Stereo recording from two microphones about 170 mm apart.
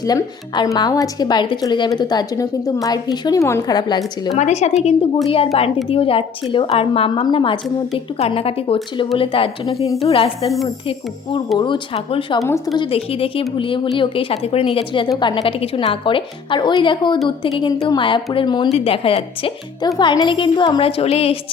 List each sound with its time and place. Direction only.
0.0 s speech: 25° left (ahead or behind)
4.4 s speech: 40° left (ahead or behind)
11.5 s speech: 25° left (ahead or behind)